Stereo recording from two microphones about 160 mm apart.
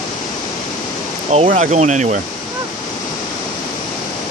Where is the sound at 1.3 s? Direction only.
50° right (ahead or behind).